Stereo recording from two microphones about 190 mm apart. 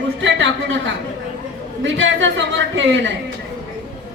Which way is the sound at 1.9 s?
75° right (ahead or behind).